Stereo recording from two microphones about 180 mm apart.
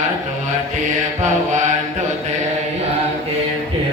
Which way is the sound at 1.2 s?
45° right (ahead or behind).